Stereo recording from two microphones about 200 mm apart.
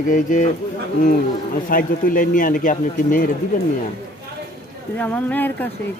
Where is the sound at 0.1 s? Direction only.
40° left (ahead or behind).